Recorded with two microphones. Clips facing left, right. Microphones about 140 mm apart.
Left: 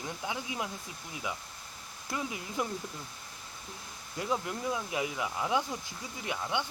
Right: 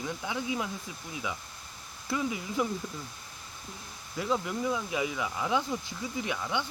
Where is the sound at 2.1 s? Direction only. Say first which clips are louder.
Right 5 dB; 15° left (ahead or behind).